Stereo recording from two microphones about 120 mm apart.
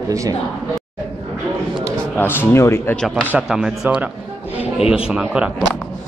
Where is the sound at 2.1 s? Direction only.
15° left (ahead or behind).